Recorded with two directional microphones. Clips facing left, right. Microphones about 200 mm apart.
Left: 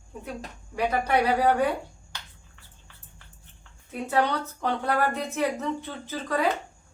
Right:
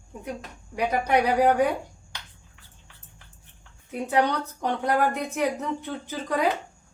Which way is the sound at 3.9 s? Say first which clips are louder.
Right 2 dB; 15° right (ahead or behind).